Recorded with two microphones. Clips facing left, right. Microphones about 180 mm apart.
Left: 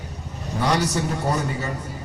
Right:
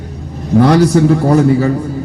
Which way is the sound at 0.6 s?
85° right.